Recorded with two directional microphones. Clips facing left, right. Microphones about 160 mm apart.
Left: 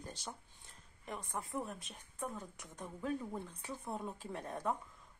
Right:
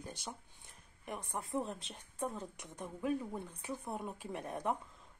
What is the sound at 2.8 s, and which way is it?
Speech, 10° right (ahead or behind).